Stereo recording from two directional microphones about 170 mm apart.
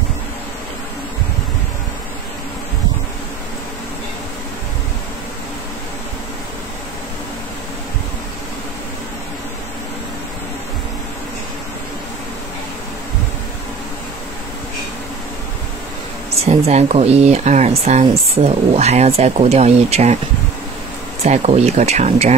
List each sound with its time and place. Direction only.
16.4 s speech: 40° right (ahead or behind)
21.2 s speech: 40° right (ahead or behind)